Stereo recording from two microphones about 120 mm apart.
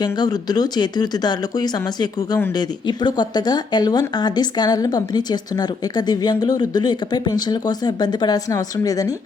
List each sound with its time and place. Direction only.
0.0 s speech: 35° left (ahead or behind)